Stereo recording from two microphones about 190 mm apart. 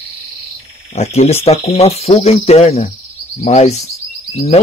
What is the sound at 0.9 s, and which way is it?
A man's voice, 35° left (ahead or behind).